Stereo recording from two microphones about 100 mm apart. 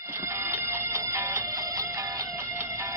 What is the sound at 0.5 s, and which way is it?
Music, 20° right (ahead or behind).